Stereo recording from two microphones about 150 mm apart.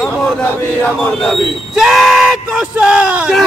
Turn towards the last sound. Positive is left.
turn(degrees=-5)  # may be behind; listen again after turning